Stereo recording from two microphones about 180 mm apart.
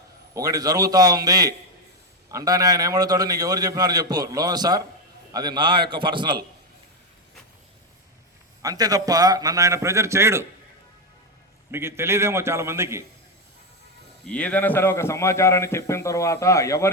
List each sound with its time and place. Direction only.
0.3 s a man's voice: 20° right (ahead or behind)
8.6 s a man's voice: 20° right (ahead or behind)
11.7 s a man's voice: 15° right (ahead or behind)
14.3 s a man's voice: 5° left (ahead or behind)